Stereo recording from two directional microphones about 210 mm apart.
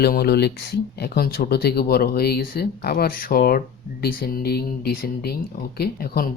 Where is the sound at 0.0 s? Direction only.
50° left (ahead or behind).